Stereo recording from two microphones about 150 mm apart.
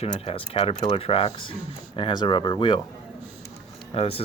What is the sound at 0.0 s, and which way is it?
Speech, 45° left (ahead or behind).